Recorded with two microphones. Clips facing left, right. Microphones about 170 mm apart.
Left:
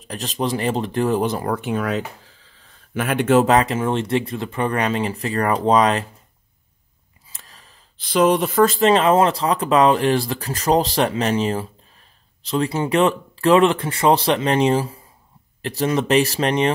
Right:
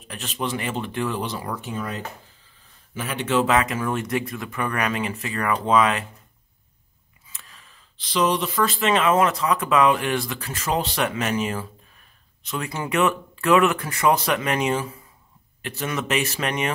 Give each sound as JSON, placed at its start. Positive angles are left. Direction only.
{"t": 0.0, "sound": "speech", "side_deg": 35}
{"t": 2.9, "sound": "speech", "side_deg": 60}
{"t": 7.3, "sound": "speech", "side_deg": 35}